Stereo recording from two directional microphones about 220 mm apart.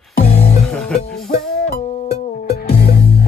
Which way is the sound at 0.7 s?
5° left (ahead or behind).